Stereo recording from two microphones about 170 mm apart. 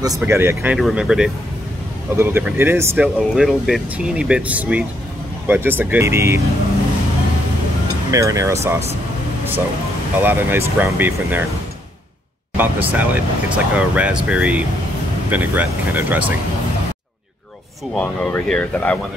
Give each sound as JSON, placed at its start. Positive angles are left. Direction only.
{"t": 0.2, "sound": "speech", "side_deg": -15}
{"t": 0.7, "sound": "speech", "side_deg": 0}
{"t": 8.1, "sound": "speech", "side_deg": -20}
{"t": 10.1, "sound": "speech", "side_deg": -10}
{"t": 12.5, "sound": "speech", "side_deg": -10}
{"t": 17.9, "sound": "speech", "side_deg": 5}